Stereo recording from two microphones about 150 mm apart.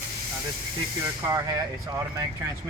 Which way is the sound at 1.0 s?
20° right (ahead or behind).